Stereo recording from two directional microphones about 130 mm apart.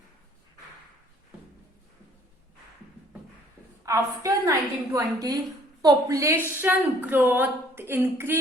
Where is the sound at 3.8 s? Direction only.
25° right (ahead or behind).